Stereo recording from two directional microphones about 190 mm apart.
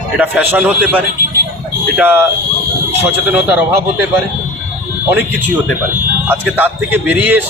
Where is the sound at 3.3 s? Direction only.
10° right (ahead or behind).